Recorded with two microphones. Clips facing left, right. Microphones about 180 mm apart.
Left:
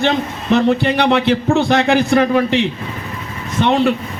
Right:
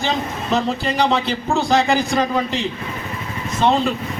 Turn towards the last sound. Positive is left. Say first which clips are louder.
# left 3 dB
turn(degrees=65)  # may be behind; listen again after turning